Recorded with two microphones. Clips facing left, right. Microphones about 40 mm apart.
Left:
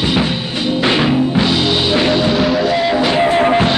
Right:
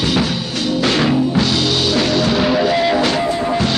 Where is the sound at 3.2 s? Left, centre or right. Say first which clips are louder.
Left 5 dB; left.